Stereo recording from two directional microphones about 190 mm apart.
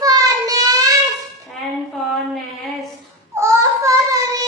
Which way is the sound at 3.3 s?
15° right (ahead or behind).